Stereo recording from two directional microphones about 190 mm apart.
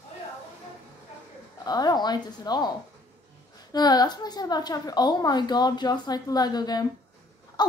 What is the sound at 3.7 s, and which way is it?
A woman's voice, 20° left (ahead or behind).